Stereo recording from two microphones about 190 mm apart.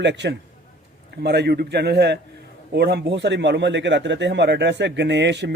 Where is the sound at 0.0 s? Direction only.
65° right (ahead or behind).